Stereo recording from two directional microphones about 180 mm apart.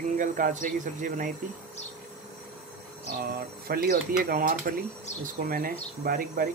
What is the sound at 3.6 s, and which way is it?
Speech, 55° right (ahead or behind).